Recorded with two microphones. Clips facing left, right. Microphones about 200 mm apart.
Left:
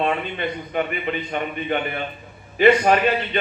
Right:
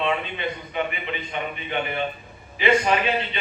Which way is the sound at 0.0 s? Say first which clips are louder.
Left 2 dB; 50° left (ahead or behind).